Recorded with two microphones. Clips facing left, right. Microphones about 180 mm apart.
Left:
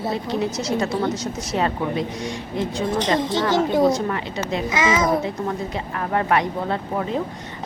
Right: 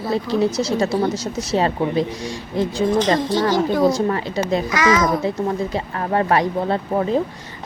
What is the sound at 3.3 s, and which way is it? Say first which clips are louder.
Speech: right 2 dB; 25° left (ahead or behind).